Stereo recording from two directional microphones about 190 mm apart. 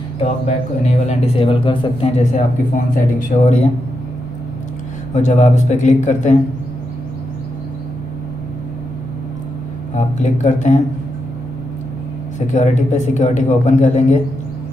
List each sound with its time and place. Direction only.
1.0 s speech: 30° left (ahead or behind)
5.1 s speech: 40° left (ahead or behind)
9.9 s speech: 40° left (ahead or behind)
12.4 s speech: 40° left (ahead or behind)